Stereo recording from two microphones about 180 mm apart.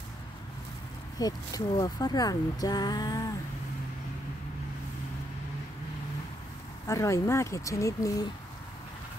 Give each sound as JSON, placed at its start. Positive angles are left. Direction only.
{"t": 1.1, "sound": "speech", "side_deg": 20}
{"t": 6.9, "sound": "speech", "side_deg": 15}